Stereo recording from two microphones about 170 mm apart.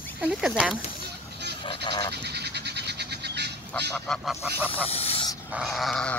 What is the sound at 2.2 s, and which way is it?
Bird, 75° right (ahead or behind).